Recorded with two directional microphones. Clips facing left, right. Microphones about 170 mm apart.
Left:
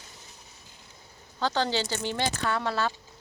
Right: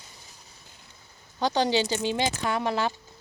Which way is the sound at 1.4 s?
15° right (ahead or behind).